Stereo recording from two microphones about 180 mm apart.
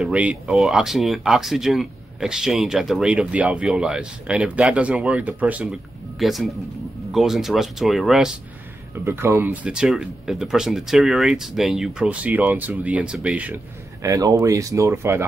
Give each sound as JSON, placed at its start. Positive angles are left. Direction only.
{"t": 0.0, "sound": "speech", "side_deg": -5}
{"t": 9.0, "sound": "speech", "side_deg": -15}
{"t": 14.0, "sound": "speech", "side_deg": -20}